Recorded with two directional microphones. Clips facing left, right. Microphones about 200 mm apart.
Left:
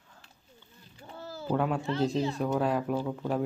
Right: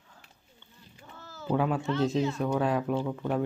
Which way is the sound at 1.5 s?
Centre (ahead or behind).